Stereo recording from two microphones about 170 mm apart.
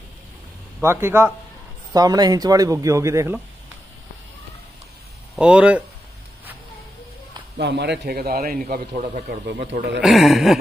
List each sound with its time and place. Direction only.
0.8 s speech: 15° right (ahead or behind)
5.3 s speech: 5° right (ahead or behind)
7.5 s a man's voice: 85° right; by 9.2 s 50° right (ahead or behind)
9.3 s speech: 90° right
10.0 s speech: centre (ahead or behind)